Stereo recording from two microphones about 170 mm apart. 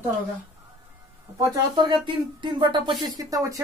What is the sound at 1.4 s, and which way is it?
Speech, 25° right (ahead or behind).